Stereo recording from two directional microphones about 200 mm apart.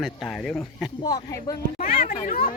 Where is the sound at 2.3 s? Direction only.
45° left (ahead or behind).